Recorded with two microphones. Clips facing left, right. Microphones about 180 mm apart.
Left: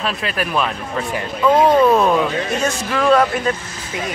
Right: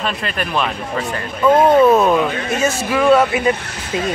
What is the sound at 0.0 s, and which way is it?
Speech, centre (ahead or behind).